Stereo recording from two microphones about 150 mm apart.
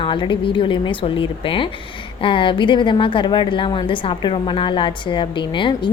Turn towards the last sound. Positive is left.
turn(degrees=35)  # may be behind; listen again after turning